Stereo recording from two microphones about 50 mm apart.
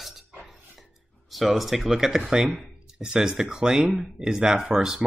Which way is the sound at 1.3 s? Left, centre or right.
Centre.